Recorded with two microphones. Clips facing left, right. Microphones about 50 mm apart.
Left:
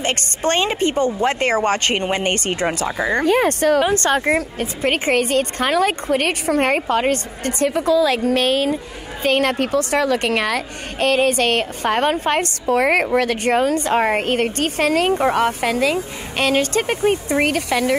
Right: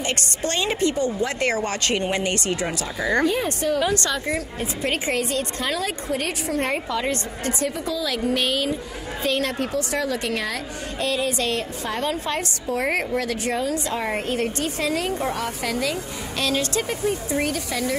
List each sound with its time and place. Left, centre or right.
0.0 s a woman's voice: left
3.3 s a woman's voice: left
3.8 s a woman's voice: left
4.1 s a woman's voice: left